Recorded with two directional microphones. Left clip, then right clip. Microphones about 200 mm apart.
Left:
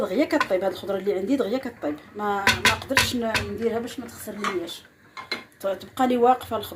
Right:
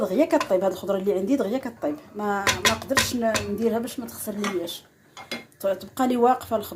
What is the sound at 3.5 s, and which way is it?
Speech, 15° right (ahead or behind).